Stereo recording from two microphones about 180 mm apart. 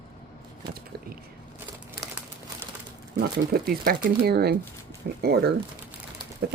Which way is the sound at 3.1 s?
60° right (ahead or behind).